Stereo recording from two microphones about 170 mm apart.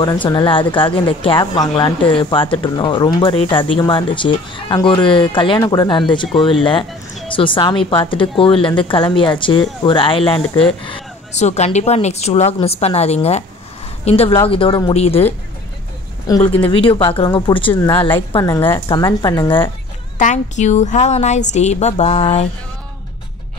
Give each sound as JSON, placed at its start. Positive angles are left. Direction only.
{"t": 0.0, "sound": "speech", "side_deg": 25}
{"t": 11.3, "sound": "a woman's voice", "side_deg": 40}
{"t": 16.3, "sound": "speech", "side_deg": 20}
{"t": 16.6, "sound": "speech", "side_deg": 30}
{"t": 18.5, "sound": "a woman's voice", "side_deg": 10}
{"t": 18.9, "sound": "speech", "side_deg": 25}
{"t": 20.2, "sound": "a woman's voice", "side_deg": 45}